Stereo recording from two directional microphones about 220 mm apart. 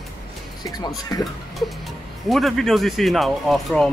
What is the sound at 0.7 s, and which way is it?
Speech, 20° left (ahead or behind).